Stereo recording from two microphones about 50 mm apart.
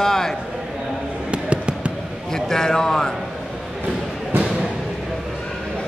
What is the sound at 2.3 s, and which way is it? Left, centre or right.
Speech, centre.